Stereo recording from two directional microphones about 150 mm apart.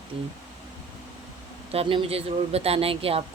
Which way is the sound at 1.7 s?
40° right (ahead or behind).